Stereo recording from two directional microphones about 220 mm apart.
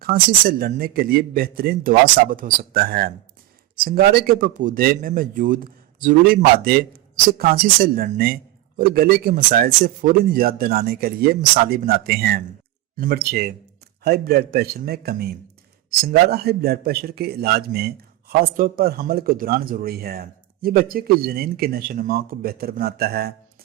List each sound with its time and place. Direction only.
0.0 s a man's voice: 40° right (ahead or behind)